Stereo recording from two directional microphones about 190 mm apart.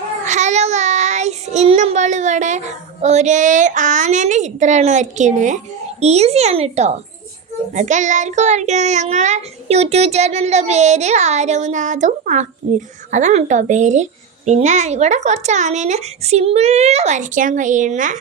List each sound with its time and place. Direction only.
0.3 s child singing: 40° right (ahead or behind)
6.0 s a child's voice: 35° right (ahead or behind)